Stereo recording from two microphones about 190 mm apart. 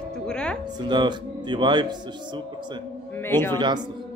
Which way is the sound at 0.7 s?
25° right (ahead or behind).